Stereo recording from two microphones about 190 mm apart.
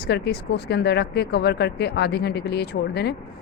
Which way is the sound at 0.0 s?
60° left (ahead or behind).